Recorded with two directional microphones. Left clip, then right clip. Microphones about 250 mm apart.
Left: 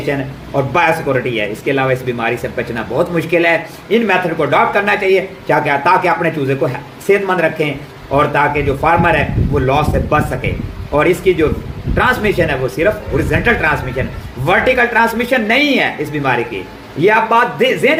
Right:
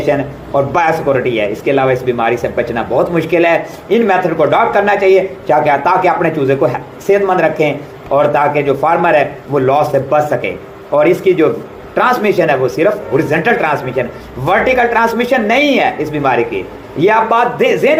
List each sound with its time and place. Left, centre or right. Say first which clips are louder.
0.0 s speech: right 5 dB; centre